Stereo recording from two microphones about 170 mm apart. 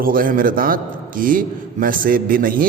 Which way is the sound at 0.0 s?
55° right (ahead or behind).